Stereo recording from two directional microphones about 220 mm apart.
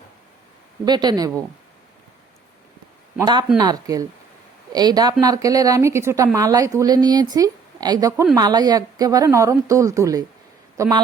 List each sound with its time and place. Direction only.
0.9 s speech: 20° right (ahead or behind)
3.2 s a woman's voice: 20° right (ahead or behind)